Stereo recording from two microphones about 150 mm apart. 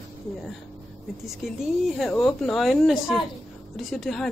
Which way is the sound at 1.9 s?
Centre (ahead or behind).